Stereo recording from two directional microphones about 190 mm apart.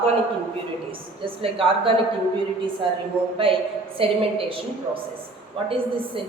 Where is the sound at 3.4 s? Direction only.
30° right (ahead or behind).